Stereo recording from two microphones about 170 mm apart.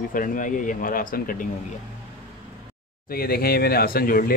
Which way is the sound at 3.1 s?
60° left (ahead or behind).